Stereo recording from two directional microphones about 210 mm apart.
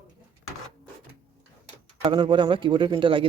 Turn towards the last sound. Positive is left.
turn(degrees=-25)  # may be behind; listen again after turning